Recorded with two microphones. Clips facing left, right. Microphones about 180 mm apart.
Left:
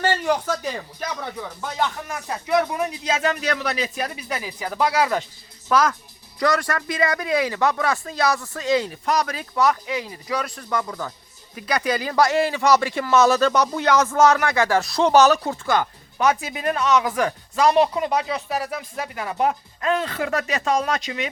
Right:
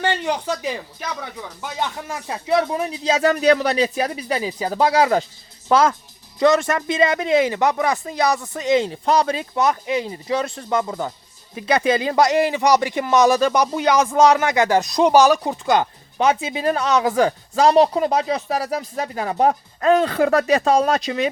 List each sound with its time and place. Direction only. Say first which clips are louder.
2.0 s speech: right 3 dB; 25° right (ahead or behind)